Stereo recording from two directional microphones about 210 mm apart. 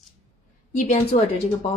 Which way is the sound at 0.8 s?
30° left (ahead or behind).